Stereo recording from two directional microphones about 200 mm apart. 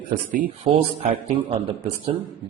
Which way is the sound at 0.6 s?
25° right (ahead or behind).